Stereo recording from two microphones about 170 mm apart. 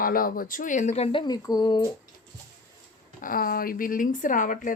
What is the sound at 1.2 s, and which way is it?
Speech, 25° left (ahead or behind).